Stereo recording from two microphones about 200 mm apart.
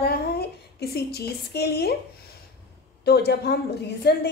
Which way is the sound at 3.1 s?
55° left (ahead or behind).